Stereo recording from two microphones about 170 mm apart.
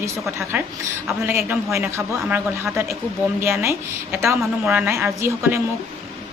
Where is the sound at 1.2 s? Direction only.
15° right (ahead or behind).